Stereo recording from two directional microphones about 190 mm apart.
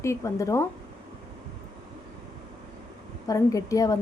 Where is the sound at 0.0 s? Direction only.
15° left (ahead or behind).